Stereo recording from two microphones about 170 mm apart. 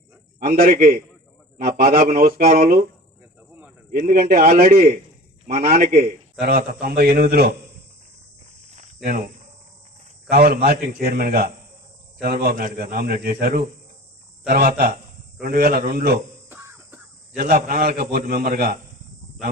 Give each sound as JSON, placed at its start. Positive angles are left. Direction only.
{"t": 0.3, "sound": "a man's voice", "side_deg": -60}
{"t": 3.9, "sound": "a man's voice", "side_deg": -50}
{"t": 9.0, "sound": "a man's voice", "side_deg": -55}
{"t": 10.3, "sound": "a man's voice", "side_deg": -65}
{"t": 16.5, "sound": "a sound", "side_deg": -15}
{"t": 17.3, "sound": "a man's voice", "side_deg": -60}